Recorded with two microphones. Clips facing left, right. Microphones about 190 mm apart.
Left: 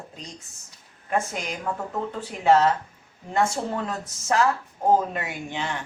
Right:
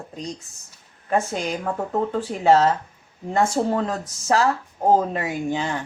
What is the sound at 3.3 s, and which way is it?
Speech, 35° right (ahead or behind).